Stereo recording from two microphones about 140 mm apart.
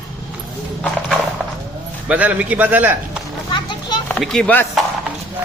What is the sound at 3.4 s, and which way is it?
Children playing, 30° left (ahead or behind).